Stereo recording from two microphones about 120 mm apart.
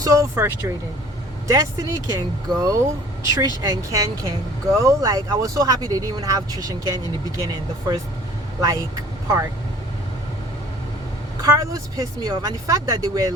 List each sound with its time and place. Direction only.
0.0 s speech: 25° right (ahead or behind)
11.3 s speech: 25° right (ahead or behind)